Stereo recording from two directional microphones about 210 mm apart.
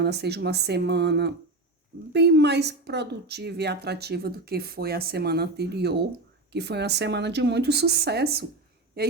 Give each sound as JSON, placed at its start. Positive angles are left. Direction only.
{"t": 0.0, "sound": "a woman's voice", "side_deg": -50}